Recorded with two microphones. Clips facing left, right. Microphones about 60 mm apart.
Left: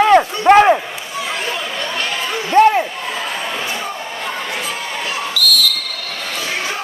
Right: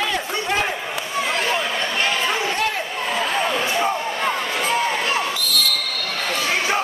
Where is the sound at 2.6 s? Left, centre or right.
Left.